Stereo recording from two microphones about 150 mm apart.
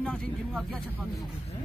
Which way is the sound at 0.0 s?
10° left (ahead or behind).